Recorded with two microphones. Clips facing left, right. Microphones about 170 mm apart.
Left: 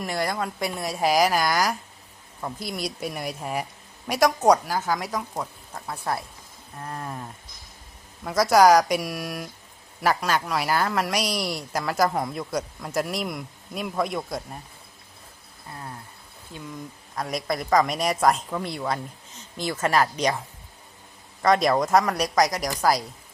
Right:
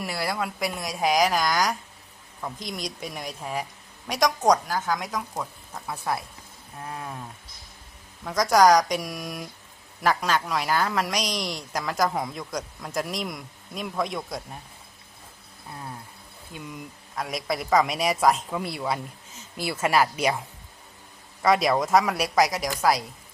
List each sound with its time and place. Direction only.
0.0 s a woman's voice: 5° right (ahead or behind)
17.2 s a woman's voice: centre (ahead or behind)
21.4 s a woman's voice: 5° right (ahead or behind)